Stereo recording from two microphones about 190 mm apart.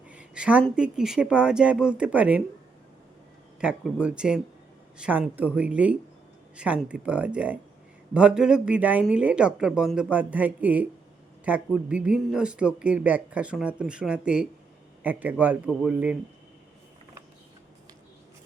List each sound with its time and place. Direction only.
0.1 s a sound: 5° right (ahead or behind)
0.8 s speech: 5° right (ahead or behind)
3.6 s a woman's voice: 5° right (ahead or behind)